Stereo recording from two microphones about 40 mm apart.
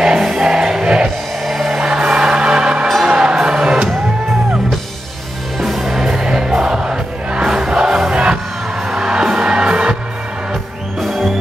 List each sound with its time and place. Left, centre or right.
0.0 s music: centre
0.8 s music: right
1.4 s music: centre
1.8 s music: centre
5.6 s music: centre
7.7 s choir: centre
8.1 s music: right
10.5 s music: centre